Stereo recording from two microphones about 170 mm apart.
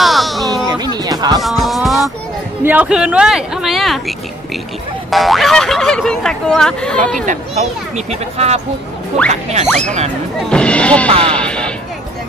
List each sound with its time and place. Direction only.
0.0 s a sound: centre (ahead or behind)
0.7 s music: 25° right (ahead or behind)
1.4 s music: centre (ahead or behind)
2.6 s speech: 10° right (ahead or behind)
5.1 s speech: centre (ahead or behind)
8.1 s speech: 40° right (ahead or behind)
10.5 s speech: 5° left (ahead or behind)
11.3 s a sound: 5° left (ahead or behind)